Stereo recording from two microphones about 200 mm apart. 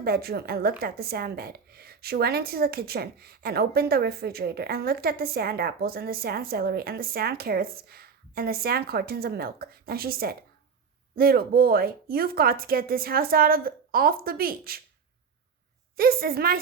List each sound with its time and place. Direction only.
0.0 s a woman's voice: 50° right (ahead or behind)
16.0 s a woman's voice: 50° right (ahead or behind)